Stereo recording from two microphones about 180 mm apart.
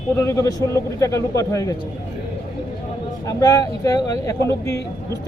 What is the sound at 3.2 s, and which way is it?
A man's voice, 20° left (ahead or behind).